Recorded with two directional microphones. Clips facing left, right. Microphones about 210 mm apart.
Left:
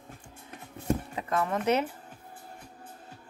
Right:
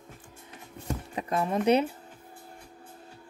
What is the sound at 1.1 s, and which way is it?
Speech, 15° right (ahead or behind).